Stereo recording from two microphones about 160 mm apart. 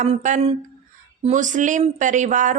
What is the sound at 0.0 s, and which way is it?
A woman's voice, 45° right (ahead or behind).